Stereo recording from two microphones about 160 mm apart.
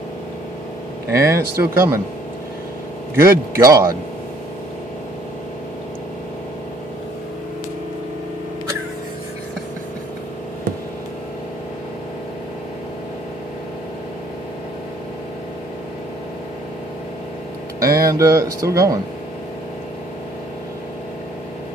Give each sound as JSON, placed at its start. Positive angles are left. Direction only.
{"t": 1.1, "sound": "speech", "side_deg": -20}
{"t": 3.2, "sound": "speech", "side_deg": -15}
{"t": 17.7, "sound": "speech", "side_deg": -20}